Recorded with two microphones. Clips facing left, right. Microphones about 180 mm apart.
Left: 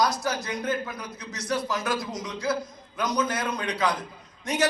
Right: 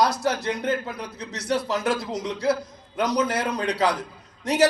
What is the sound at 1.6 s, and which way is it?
A man's voice, 65° right (ahead or behind).